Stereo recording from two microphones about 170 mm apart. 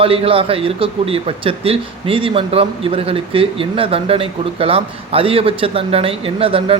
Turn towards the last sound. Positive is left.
turn(degrees=-30)  # may be behind; listen again after turning